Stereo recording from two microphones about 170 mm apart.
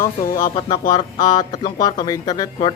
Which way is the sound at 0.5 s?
25° left (ahead or behind).